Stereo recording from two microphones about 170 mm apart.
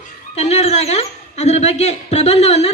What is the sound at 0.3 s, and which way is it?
Speech, 40° left (ahead or behind).